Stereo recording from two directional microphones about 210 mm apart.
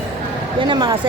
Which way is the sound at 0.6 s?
20° right (ahead or behind).